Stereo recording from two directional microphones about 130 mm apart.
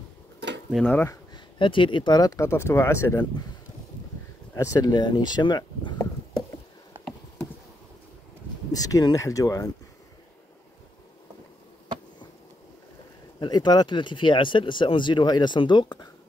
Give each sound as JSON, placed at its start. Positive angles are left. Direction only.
{"t": 0.8, "sound": "speech", "side_deg": 15}
{"t": 1.3, "sound": "speech", "side_deg": 40}
{"t": 4.6, "sound": "speech", "side_deg": 25}
{"t": 8.7, "sound": "speech", "side_deg": 30}
{"t": 13.4, "sound": "speech", "side_deg": 35}